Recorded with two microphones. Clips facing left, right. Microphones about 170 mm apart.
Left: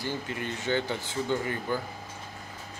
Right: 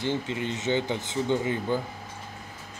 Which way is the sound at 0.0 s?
20° right (ahead or behind).